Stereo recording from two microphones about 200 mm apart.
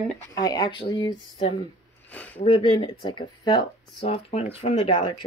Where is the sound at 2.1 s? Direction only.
10° left (ahead or behind).